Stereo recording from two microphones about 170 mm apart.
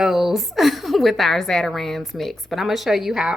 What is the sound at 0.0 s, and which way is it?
A woman's voice, centre (ahead or behind).